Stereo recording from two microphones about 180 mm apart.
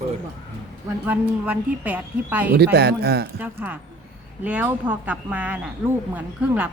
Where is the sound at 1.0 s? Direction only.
10° right (ahead or behind).